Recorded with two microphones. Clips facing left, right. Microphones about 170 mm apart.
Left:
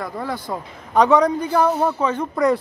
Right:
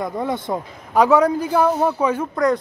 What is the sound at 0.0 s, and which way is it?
Speech, 20° right (ahead or behind).